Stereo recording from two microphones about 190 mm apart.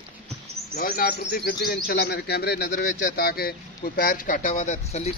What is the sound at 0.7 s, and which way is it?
Speech, 50° left (ahead or behind).